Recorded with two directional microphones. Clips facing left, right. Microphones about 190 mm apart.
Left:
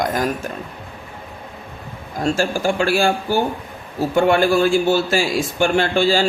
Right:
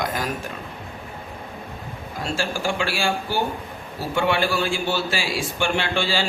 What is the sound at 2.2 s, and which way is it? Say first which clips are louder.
A man's voice: left 7 dB; 45° left (ahead or behind).